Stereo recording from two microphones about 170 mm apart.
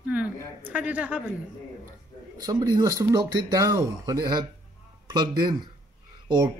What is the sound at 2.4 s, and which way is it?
Speech, 20° right (ahead or behind).